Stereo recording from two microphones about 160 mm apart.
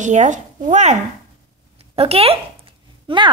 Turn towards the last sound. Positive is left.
turn(degrees=-30)  # may be behind; listen again after turning